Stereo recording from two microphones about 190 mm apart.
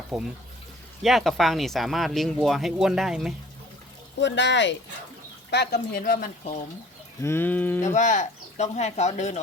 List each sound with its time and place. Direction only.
0.1 s speech: centre (ahead or behind)
4.2 s speech: 65° left (ahead or behind)
6.0 s speech: 50° left (ahead or behind)
7.2 s livestock: 15° left (ahead or behind)
7.8 s speech: 40° left (ahead or behind)